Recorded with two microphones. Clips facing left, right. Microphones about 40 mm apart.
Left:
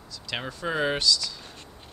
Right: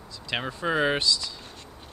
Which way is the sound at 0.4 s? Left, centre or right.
Centre.